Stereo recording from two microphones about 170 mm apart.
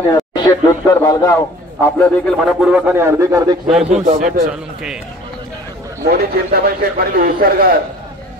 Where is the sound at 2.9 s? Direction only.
15° right (ahead or behind).